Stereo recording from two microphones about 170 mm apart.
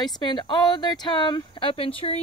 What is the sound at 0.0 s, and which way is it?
Speech, 25° left (ahead or behind).